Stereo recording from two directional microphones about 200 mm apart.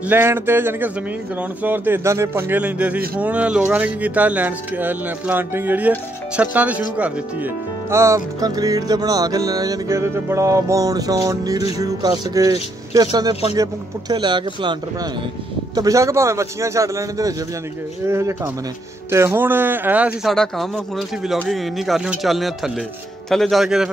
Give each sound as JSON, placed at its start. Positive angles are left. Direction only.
{"t": 0.0, "sound": "speech", "side_deg": -10}